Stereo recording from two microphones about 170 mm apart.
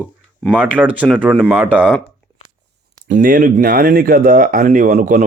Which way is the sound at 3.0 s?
50° right (ahead or behind).